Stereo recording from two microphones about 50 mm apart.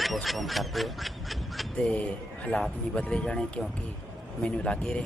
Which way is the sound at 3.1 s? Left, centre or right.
Centre.